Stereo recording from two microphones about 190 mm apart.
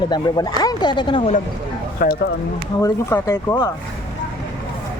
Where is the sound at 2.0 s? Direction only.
50° left (ahead or behind).